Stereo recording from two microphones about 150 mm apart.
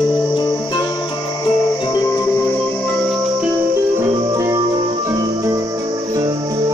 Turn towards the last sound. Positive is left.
turn(degrees=-25)  # may be behind; listen again after turning